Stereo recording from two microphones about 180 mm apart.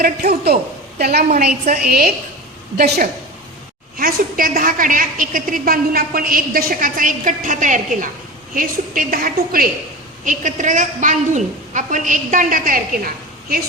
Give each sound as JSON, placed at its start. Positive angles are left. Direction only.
{"t": 0.0, "sound": "a woman's voice", "side_deg": -55}